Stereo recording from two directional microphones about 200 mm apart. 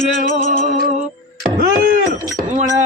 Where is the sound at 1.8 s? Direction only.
40° right (ahead or behind).